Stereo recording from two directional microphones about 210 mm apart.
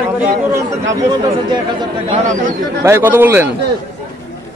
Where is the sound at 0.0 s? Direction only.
10° right (ahead or behind).